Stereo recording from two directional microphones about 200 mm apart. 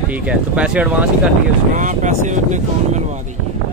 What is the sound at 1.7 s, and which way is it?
Speech, 40° right (ahead or behind).